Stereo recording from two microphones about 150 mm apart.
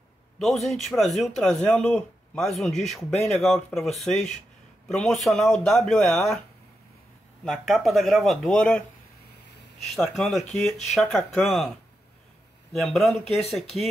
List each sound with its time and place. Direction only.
0.4 s speech: centre (ahead or behind)
7.4 s speech: centre (ahead or behind)
9.9 s speech: centre (ahead or behind)
12.7 s speech: centre (ahead or behind)